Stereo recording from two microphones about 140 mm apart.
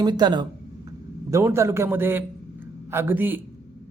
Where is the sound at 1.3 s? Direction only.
20° right (ahead or behind).